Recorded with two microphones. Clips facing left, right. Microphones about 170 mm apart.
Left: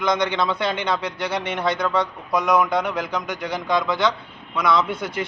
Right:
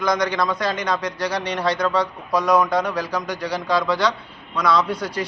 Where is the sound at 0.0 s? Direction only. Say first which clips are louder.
Even; 25° left (ahead or behind).